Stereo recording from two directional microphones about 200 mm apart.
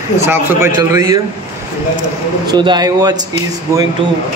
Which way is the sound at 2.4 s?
20° right (ahead or behind).